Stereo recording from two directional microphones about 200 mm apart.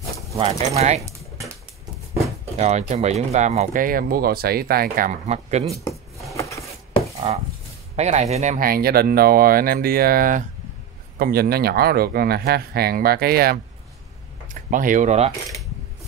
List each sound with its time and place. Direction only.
0.4 s speech: 30° right (ahead or behind)
2.5 s speech: 35° right (ahead or behind)
6.3 s a sound: 15° left (ahead or behind)
7.2 s speech: 30° right (ahead or behind)